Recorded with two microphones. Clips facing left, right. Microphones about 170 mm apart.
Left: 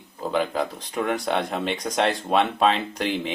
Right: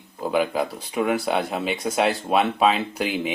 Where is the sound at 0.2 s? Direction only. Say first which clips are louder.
Right 2 dB; 10° right (ahead or behind).